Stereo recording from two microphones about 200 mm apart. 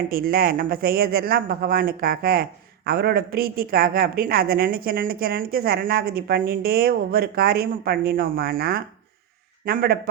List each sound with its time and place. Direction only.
0.1 s speech: 45° right (ahead or behind)